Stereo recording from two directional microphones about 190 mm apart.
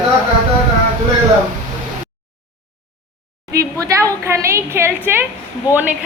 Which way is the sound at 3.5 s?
15° right (ahead or behind).